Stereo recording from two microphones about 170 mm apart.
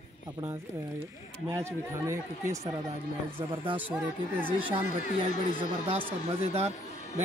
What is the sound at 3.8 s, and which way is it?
Speech, 10° right (ahead or behind).